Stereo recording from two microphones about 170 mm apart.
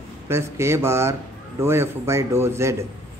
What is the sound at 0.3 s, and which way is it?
A man's voice, 15° right (ahead or behind).